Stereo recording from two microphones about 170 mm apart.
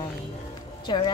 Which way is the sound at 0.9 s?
30° left (ahead or behind).